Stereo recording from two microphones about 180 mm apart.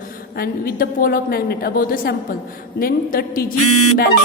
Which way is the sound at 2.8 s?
55° left (ahead or behind).